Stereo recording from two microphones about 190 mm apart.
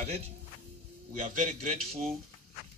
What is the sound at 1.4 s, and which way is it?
Speech, 35° right (ahead or behind).